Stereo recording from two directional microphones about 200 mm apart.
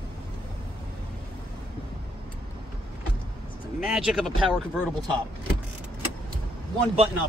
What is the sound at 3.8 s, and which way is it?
Speech, centre (ahead or behind).